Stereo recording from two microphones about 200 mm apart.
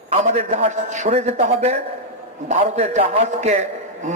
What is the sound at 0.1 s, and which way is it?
A man's voice, 35° right (ahead or behind).